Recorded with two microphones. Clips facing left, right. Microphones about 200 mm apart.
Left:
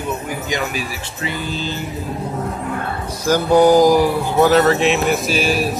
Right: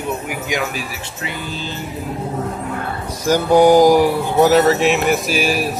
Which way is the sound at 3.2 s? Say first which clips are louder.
Right 1 dB; 15° right (ahead or behind).